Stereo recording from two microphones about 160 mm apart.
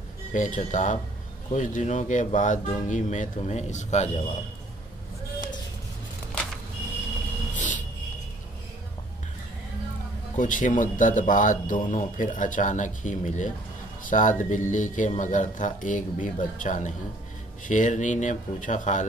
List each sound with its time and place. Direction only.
0.3 s speech: 50° left (ahead or behind)
7.5 s a sound: 50° left (ahead or behind)
10.3 s speech: 50° left (ahead or behind)